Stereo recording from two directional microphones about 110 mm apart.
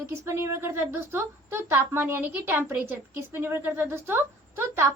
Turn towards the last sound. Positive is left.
turn(degrees=-20)  # may be behind; listen again after turning